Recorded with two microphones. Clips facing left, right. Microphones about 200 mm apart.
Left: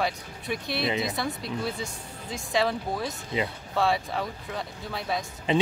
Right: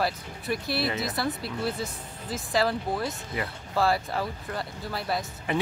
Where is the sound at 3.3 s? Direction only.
20° left (ahead or behind).